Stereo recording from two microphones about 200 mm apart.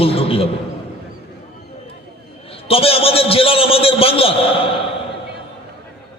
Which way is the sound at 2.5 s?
30° left (ahead or behind).